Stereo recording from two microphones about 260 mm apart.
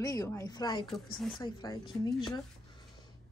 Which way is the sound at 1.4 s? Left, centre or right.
Centre.